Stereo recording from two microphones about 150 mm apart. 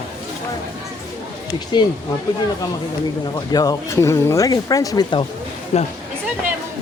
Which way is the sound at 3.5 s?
25° left (ahead or behind).